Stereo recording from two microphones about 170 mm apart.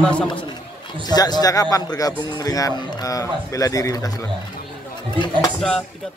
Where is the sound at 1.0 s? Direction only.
25° left (ahead or behind).